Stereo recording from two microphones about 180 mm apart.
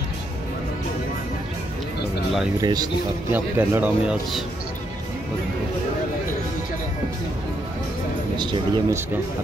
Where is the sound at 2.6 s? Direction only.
25° right (ahead or behind).